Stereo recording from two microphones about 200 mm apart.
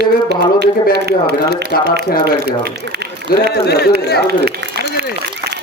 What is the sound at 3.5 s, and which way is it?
Speech, 55° left (ahead or behind).